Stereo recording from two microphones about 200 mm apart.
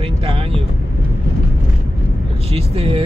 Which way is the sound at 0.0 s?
25° right (ahead or behind).